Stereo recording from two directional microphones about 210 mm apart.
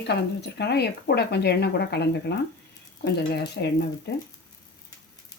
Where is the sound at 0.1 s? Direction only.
50° left (ahead or behind).